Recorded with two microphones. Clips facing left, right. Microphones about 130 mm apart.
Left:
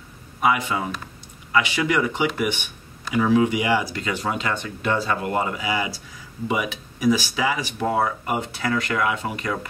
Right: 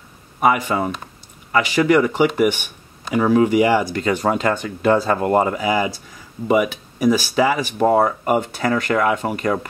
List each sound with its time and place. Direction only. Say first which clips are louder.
0.4 s speech: right 4 dB; 45° right (ahead or behind)